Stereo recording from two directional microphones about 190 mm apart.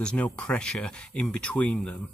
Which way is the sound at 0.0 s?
5° left (ahead or behind).